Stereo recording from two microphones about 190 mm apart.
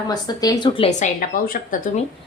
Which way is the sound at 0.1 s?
20° left (ahead or behind).